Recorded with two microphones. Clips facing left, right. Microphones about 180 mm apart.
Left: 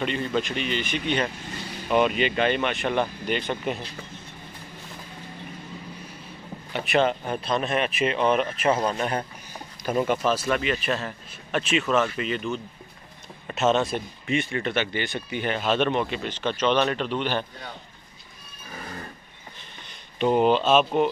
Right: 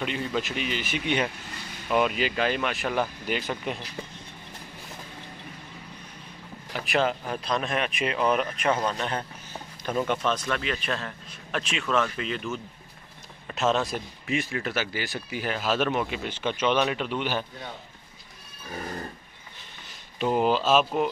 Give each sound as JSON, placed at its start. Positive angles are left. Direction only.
{"t": 0.0, "sound": "speech", "side_deg": -5}
{"t": 6.7, "sound": "speech", "side_deg": 0}
{"t": 20.2, "sound": "speech", "side_deg": -5}